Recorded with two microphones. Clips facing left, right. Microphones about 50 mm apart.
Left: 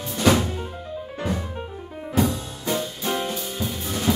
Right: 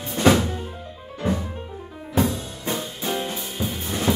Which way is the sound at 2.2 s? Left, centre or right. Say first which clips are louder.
Even; right.